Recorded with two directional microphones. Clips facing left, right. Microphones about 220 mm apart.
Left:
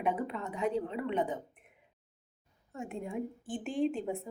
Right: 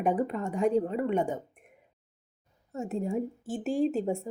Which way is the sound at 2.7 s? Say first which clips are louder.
Right 7 dB; 40° right (ahead or behind).